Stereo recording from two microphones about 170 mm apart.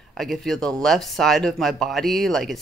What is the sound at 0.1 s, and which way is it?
Speech, centre (ahead or behind).